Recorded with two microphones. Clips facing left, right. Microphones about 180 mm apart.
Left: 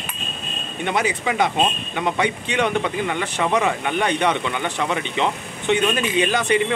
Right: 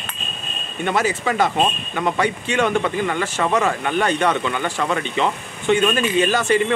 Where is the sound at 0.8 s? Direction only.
15° left (ahead or behind).